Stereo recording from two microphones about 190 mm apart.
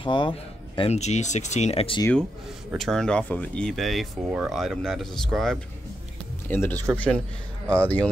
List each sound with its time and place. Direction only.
0.0 s speech: 25° left (ahead or behind)
2.7 s speech: centre (ahead or behind)